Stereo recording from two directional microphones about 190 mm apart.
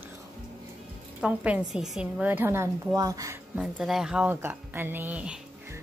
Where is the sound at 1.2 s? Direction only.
5° right (ahead or behind).